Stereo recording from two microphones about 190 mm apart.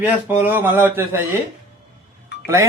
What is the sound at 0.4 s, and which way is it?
Speech, 10° right (ahead or behind).